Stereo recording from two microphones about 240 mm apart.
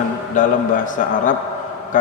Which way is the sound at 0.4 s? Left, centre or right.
Left.